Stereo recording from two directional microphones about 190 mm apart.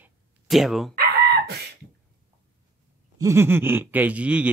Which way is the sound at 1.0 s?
55° right (ahead or behind).